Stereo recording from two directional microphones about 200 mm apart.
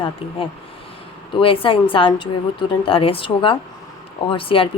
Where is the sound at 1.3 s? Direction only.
25° left (ahead or behind).